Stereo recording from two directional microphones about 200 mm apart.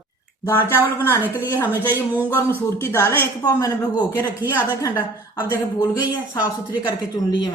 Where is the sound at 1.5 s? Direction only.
10° left (ahead or behind).